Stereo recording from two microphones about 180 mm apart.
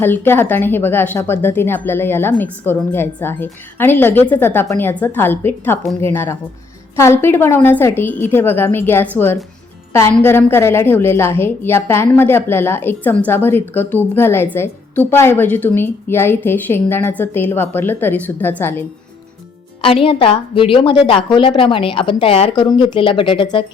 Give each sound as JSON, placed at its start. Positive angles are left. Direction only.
{"t": 0.0, "sound": "a woman's voice", "side_deg": 10}
{"t": 19.8, "sound": "a woman's voice", "side_deg": 30}